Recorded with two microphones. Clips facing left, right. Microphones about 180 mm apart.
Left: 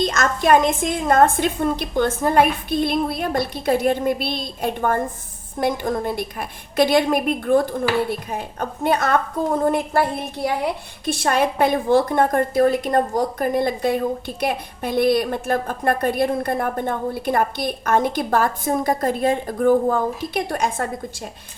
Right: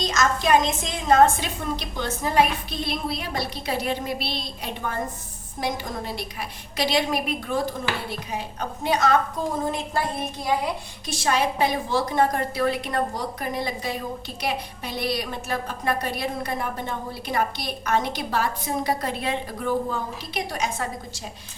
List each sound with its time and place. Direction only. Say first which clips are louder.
0.0 s a woman's voice: left 3 dB; 55° left (ahead or behind)